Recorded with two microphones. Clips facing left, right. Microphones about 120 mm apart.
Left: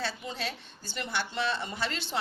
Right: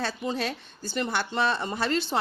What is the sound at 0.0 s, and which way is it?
A woman's voice, 45° right (ahead or behind).